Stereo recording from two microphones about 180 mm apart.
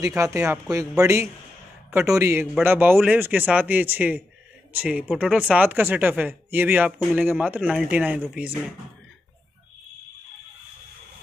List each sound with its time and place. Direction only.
0.0 s speech: 15° right (ahead or behind)